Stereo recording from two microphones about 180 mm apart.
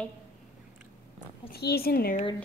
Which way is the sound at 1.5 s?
60° left (ahead or behind).